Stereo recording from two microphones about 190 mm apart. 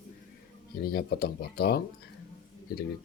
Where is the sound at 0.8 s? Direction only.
55° left (ahead or behind).